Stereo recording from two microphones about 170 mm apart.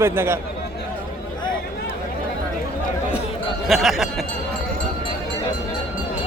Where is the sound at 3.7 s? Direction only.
Centre (ahead or behind).